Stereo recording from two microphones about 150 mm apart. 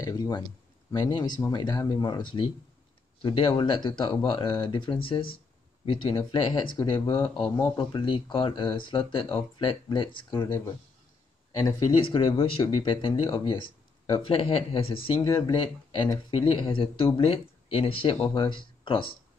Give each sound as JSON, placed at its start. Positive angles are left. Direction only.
{"t": 0.0, "sound": "speech", "side_deg": 25}
{"t": 11.6, "sound": "speech", "side_deg": 35}